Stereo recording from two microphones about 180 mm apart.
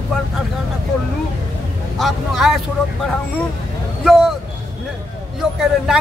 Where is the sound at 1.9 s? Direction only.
Centre (ahead or behind).